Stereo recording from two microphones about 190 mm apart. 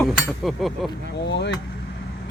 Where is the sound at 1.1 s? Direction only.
60° left (ahead or behind).